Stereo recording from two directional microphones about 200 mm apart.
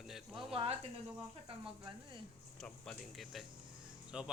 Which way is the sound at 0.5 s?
30° right (ahead or behind).